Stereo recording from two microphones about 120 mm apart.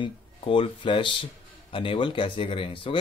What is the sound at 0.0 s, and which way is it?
Speech, 45° left (ahead or behind).